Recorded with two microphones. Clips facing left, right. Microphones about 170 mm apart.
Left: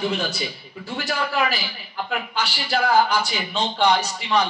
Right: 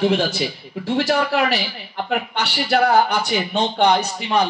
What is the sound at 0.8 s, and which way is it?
Speech, 75° right (ahead or behind).